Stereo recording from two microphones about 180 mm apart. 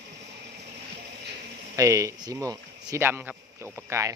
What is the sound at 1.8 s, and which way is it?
A man's voice, 15° right (ahead or behind).